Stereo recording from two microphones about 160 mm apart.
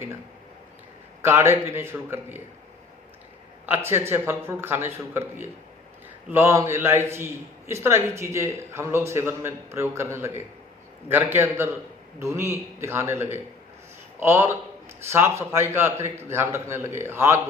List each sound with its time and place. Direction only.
1.2 s a man's voice: 15° right (ahead or behind)
3.7 s a man's voice: 15° right (ahead or behind)